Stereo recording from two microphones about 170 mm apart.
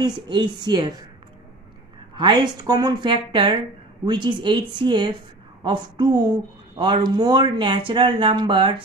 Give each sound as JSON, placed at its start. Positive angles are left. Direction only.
{"t": 0.0, "sound": "speech", "side_deg": -25}
{"t": 2.1, "sound": "speech", "side_deg": -25}